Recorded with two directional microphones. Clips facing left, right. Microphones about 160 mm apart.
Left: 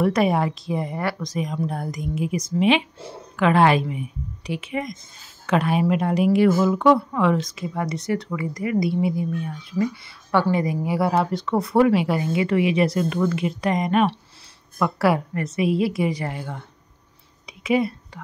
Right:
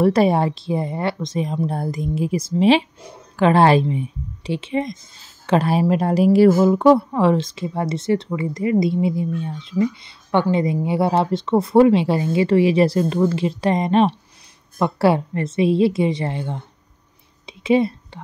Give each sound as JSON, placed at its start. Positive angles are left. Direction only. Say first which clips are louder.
{"t": 0.0, "sound": "speech", "louder": "right 4 dB", "side_deg": -30}
{"t": 17.5, "sound": "whispering", "louder": "right 4 dB", "side_deg": -25}